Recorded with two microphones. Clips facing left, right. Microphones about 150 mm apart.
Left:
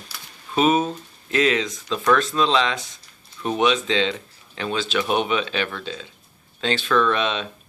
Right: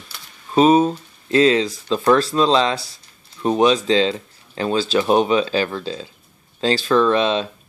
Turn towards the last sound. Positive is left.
turn(degrees=-30)  # may be behind; listen again after turning